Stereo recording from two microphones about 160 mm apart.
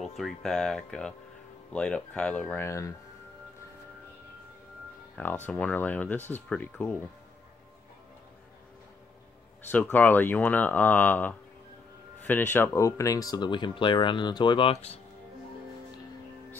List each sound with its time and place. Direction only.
0.2 s speech: 5° left (ahead or behind)
5.1 s speech: 10° left (ahead or behind)
9.7 s speech: 10° left (ahead or behind); by 15.0 s 40° left (ahead or behind)